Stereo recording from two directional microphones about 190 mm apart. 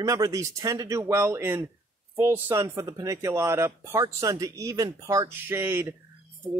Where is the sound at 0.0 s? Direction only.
15° right (ahead or behind).